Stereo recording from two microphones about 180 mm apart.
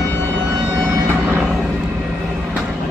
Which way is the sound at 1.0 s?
15° right (ahead or behind).